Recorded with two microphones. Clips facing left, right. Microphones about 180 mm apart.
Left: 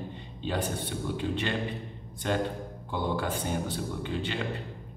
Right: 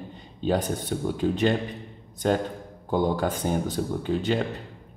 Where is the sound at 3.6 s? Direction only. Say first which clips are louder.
Right 6 dB; 40° right (ahead or behind).